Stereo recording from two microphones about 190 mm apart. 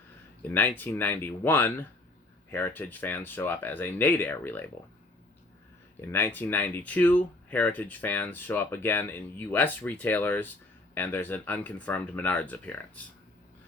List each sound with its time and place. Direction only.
0.4 s speech: 10° left (ahead or behind)
6.0 s speech: 10° left (ahead or behind)